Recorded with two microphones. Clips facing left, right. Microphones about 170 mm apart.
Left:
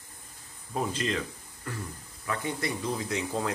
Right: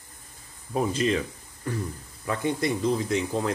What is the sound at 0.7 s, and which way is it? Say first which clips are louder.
Speech: right 6 dB; 10° right (ahead or behind).